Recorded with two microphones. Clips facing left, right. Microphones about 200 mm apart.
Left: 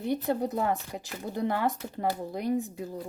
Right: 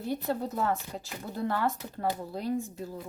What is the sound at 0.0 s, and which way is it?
Speech, 20° left (ahead or behind).